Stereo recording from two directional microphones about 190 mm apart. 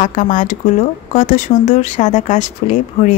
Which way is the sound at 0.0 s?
40° left (ahead or behind).